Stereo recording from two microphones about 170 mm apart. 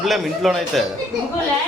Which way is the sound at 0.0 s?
Centre (ahead or behind).